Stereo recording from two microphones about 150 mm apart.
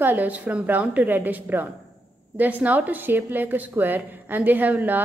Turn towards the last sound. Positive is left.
turn(degrees=-10)  # may be behind; listen again after turning